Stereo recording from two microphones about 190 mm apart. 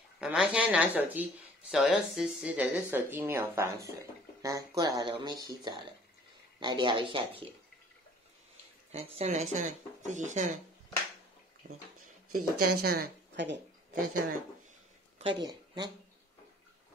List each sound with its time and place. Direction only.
0.2 s speech: 5° right (ahead or behind); by 7.4 s 25° right (ahead or behind)
8.9 s speech: 35° right (ahead or behind)
12.3 s speech: 50° right (ahead or behind)
15.1 s speech: 25° right (ahead or behind)